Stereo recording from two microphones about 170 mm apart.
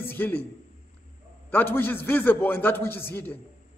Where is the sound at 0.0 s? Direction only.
10° left (ahead or behind).